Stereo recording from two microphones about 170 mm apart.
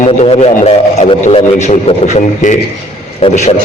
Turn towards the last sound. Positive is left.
turn(degrees=40)  # may be behind; listen again after turning